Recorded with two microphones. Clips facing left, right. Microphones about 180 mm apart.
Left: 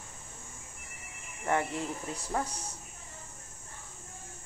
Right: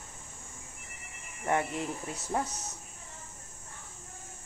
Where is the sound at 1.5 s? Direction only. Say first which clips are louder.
Even; 20° right (ahead or behind).